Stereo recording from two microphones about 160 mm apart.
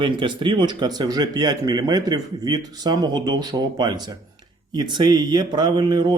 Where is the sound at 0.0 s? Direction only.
30° right (ahead or behind).